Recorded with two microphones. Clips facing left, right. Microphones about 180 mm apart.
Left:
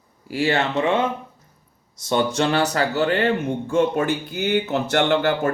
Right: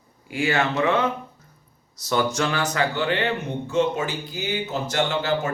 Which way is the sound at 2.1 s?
30° left (ahead or behind).